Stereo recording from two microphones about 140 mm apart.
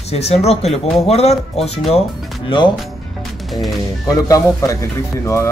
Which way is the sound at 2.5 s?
35° left (ahead or behind).